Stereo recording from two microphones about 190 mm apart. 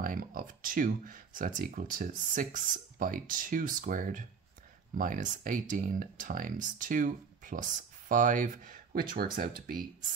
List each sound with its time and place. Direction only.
0.0 s speech: 50° right (ahead or behind)